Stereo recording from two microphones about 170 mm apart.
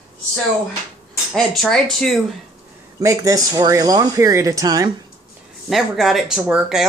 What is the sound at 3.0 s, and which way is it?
Speech, 20° right (ahead or behind).